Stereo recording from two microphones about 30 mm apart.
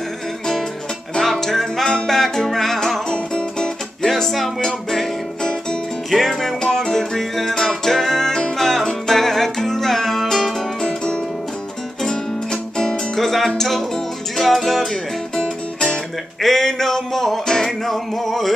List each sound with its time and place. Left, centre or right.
1.2 s music: centre
3.1 s music: left
4.0 s music: centre
5.4 s music: left
6.0 s music: centre
6.6 s music: left
10.8 s music: left
13.1 s music: centre